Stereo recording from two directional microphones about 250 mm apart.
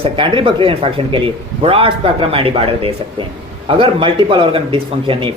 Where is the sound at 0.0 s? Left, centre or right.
Centre.